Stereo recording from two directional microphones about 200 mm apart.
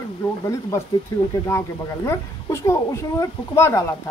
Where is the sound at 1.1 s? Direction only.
20° left (ahead or behind).